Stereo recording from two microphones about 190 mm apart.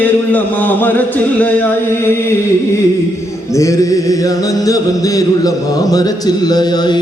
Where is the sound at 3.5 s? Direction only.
15° left (ahead or behind).